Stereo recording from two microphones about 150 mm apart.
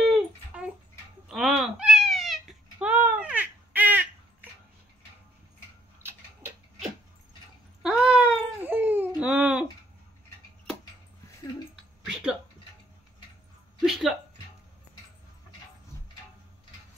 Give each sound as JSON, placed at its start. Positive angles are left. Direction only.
{"t": 0.0, "sound": "a sound", "side_deg": -5}
{"t": 1.3, "sound": "babbling", "side_deg": 0}
{"t": 7.8, "sound": "cat", "side_deg": 0}
{"t": 8.6, "sound": "a sound", "side_deg": -10}
{"t": 12.1, "sound": "music", "side_deg": -5}
{"t": 13.8, "sound": "music", "side_deg": 0}